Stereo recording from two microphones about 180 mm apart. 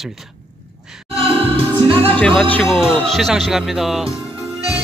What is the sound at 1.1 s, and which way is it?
Music, 30° right (ahead or behind).